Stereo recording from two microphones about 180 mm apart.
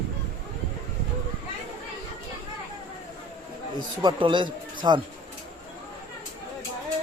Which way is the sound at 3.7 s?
25° right (ahead or behind).